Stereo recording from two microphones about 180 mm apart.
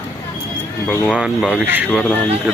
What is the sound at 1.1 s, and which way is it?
Speech, 5° right (ahead or behind).